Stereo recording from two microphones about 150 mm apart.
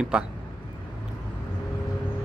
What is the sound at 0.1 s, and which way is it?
Speech, 5° right (ahead or behind).